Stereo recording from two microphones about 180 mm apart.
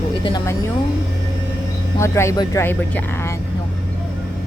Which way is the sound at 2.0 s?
15° left (ahead or behind).